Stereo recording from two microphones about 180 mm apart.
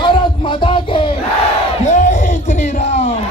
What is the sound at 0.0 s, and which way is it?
Music, 25° left (ahead or behind).